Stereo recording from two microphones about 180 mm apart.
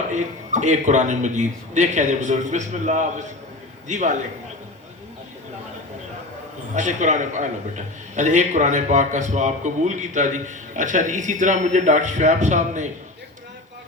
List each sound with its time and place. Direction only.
0.1 s a man's voice: 40° right (ahead or behind)
6.7 s a man's voice: 40° right (ahead or behind)